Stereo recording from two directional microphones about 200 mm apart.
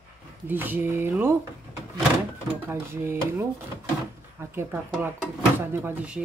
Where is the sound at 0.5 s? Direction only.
10° right (ahead or behind).